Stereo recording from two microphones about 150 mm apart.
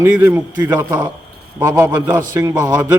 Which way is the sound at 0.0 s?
15° right (ahead or behind).